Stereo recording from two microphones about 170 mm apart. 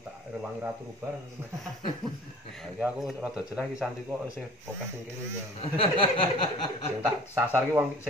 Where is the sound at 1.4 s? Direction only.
15° right (ahead or behind).